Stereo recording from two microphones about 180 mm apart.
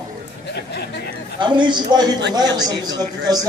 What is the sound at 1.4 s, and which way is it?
A man's voice, 25° right (ahead or behind).